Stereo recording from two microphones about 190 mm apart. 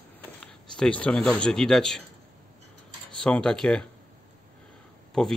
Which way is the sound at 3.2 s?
5° left (ahead or behind).